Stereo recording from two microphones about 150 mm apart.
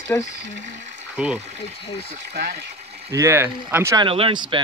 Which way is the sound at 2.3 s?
90° right.